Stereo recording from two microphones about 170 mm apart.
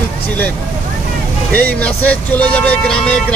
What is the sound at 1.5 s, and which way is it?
Speech, 10° left (ahead or behind).